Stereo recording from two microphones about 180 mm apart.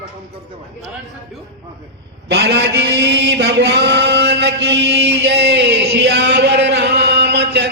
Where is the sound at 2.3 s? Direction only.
70° right (ahead or behind).